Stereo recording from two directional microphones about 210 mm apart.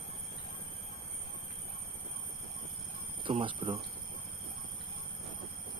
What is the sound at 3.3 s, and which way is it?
Speech, 25° right (ahead or behind).